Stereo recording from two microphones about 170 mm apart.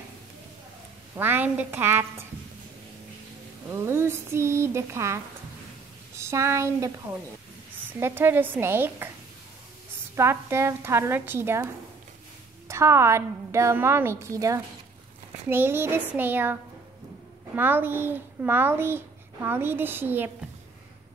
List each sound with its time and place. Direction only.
1.1 s a child's voice: 10° right (ahead or behind)
3.6 s a child's voice: 15° right (ahead or behind)
10.1 s a child's voice: 15° right (ahead or behind)
17.6 s a child's voice: 10° right (ahead or behind)